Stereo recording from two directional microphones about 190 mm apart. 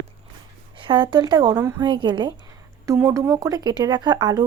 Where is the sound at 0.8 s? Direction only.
25° right (ahead or behind).